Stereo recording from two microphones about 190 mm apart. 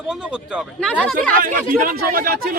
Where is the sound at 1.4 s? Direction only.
45° right (ahead or behind).